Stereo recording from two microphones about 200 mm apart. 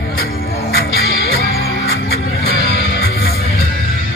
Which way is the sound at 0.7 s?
50° left (ahead or behind).